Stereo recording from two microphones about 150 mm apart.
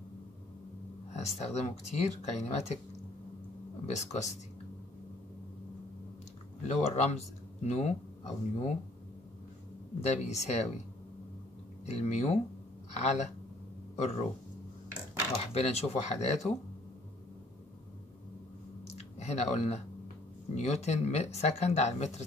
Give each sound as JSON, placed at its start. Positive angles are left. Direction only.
{"t": 1.1, "sound": "speech", "side_deg": 45}
{"t": 3.8, "sound": "speech", "side_deg": 50}
{"t": 6.7, "sound": "speech", "side_deg": 45}
{"t": 10.0, "sound": "speech", "side_deg": 50}
{"t": 11.8, "sound": "speech", "side_deg": 45}
{"t": 15.3, "sound": "speech", "side_deg": 45}
{"t": 18.9, "sound": "a sound", "side_deg": 45}
{"t": 20.5, "sound": "speech", "side_deg": 45}